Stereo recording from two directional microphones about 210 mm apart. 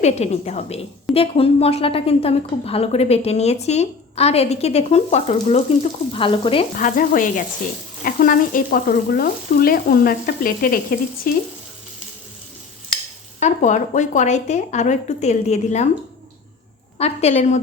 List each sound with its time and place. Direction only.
0.0 s a woman's voice: 30° left (ahead or behind)
6.7 s a woman's voice: 40° left (ahead or behind)
8.0 s frying: 40° left (ahead or behind)
13.4 s a woman's voice: 35° left (ahead or behind)
17.0 s a woman's voice: 30° left (ahead or behind)